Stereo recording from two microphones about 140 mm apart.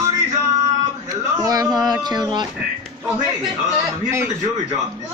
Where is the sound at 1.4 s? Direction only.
25° right (ahead or behind).